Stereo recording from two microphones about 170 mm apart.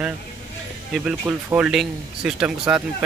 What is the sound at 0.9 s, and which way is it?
Speech, 5° right (ahead or behind).